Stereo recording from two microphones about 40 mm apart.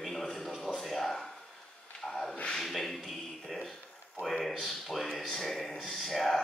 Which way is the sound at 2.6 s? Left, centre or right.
Centre.